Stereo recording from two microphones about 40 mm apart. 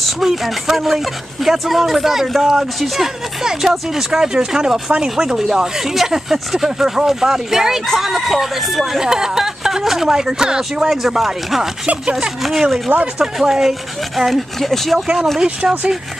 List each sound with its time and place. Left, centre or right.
0.0 s speech: centre
15.6 s speech: right